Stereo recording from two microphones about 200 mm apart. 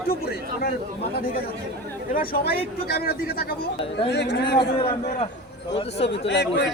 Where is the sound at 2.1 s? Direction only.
45° left (ahead or behind).